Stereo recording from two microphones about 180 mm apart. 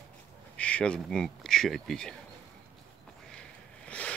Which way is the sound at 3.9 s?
5° left (ahead or behind).